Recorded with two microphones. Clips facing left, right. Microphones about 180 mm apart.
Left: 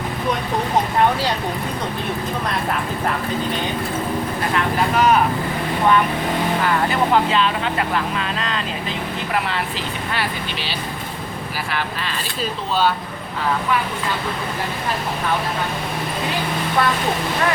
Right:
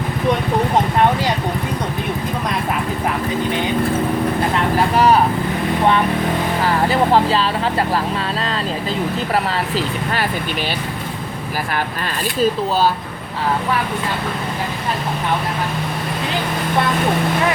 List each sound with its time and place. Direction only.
4.9 s speech: 30° right (ahead or behind)
6.6 s speech: 30° right (ahead or behind)
9.3 s speech: 40° right (ahead or behind)
12.4 s speech: 40° right (ahead or behind)